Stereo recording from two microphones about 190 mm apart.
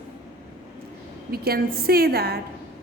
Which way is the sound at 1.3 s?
55° right (ahead or behind).